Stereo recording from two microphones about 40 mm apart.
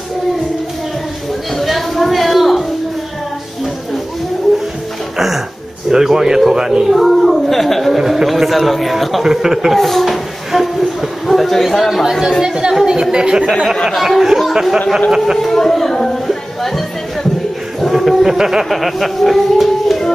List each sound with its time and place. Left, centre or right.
1.6 s a sound: centre
5.1 s music: centre
5.9 s speech: centre
6.9 s a woman's voice: centre
8.0 s speech: centre
9.8 s speech: centre
10.5 s a sound: centre
12.8 s speech: centre
14.0 s speech: centre
15.3 s speech: centre
16.3 s a sound: centre
17.7 s music: centre
18.2 s speech: centre